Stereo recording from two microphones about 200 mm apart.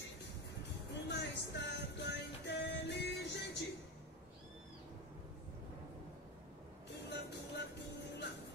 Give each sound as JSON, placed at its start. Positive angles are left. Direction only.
{"t": 1.0, "sound": "music", "side_deg": 55}
{"t": 7.1, "sound": "music", "side_deg": 55}